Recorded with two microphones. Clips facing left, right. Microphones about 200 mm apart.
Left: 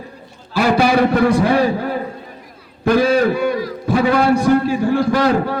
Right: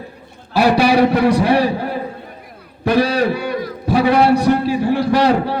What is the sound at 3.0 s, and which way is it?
Speech, 50° left (ahead or behind).